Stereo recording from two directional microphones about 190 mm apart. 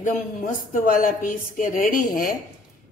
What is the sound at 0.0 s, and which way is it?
Speech, 45° left (ahead or behind).